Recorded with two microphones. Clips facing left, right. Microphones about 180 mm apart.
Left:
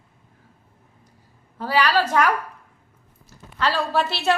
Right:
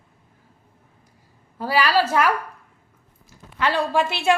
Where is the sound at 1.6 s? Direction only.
10° right (ahead or behind).